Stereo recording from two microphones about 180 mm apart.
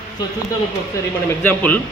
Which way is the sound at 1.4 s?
10° left (ahead or behind).